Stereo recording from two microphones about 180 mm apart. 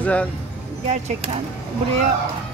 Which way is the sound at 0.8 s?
40° right (ahead or behind).